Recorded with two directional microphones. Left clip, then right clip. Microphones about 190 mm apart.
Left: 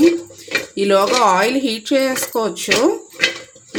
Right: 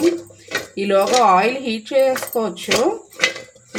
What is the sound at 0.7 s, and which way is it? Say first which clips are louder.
Speech: left 1 dB; 50° left (ahead or behind).